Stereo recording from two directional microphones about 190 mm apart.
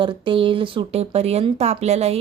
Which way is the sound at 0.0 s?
25° right (ahead or behind).